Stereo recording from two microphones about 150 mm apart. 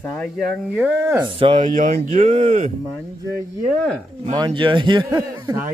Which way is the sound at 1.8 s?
60° right (ahead or behind).